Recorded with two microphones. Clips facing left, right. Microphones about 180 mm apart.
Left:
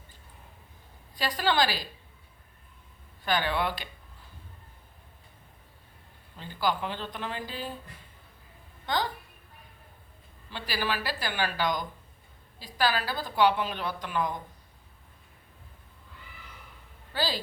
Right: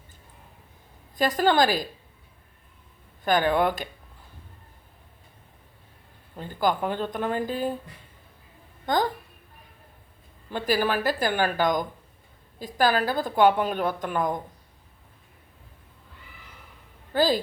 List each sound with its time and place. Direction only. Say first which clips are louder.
1.1 s a woman's voice: right 6 dB; 45° right (ahead or behind)
3.2 s a woman's voice: right 7 dB; 45° right (ahead or behind)
6.3 s a woman's voice: right 4 dB; 50° right (ahead or behind)
8.9 s a woman's voice: right 5 dB; 45° right (ahead or behind)
10.5 s a woman's voice: right 8 dB; 50° right (ahead or behind)
17.1 s speech: right 9 dB; 50° right (ahead or behind)